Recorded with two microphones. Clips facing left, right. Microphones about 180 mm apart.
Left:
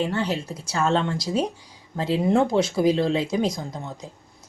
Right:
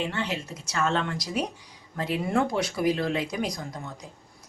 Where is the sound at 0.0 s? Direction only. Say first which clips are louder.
Left 5 dB; 35° left (ahead or behind).